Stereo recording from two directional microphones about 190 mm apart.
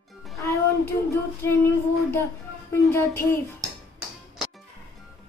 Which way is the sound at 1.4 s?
10° left (ahead or behind).